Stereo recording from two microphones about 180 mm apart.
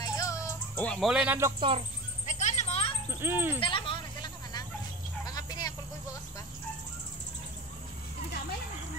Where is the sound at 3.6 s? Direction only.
30° left (ahead or behind).